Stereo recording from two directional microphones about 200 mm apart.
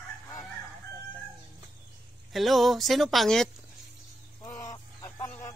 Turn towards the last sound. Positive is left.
turn(degrees=20)  # may be behind; listen again after turning